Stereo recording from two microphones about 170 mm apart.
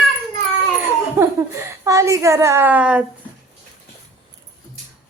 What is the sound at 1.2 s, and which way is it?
A woman's voice, 15° right (ahead or behind).